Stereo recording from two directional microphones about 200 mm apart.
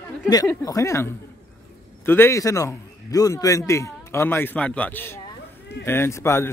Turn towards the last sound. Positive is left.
turn(degrees=10)  # may be behind; listen again after turning